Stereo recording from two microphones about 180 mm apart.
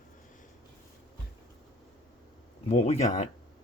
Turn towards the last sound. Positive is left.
turn(degrees=40)  # may be behind; listen again after turning